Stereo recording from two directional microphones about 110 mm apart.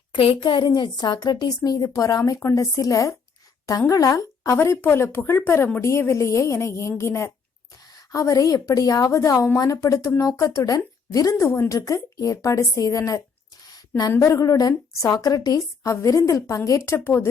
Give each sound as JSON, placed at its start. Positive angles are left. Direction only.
{"t": 0.1, "sound": "a woman's voice", "side_deg": 55}
{"t": 13.7, "sound": "a sound", "side_deg": 35}
{"t": 14.2, "sound": "speech", "side_deg": 30}